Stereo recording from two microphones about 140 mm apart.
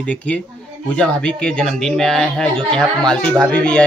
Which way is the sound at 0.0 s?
10° left (ahead or behind).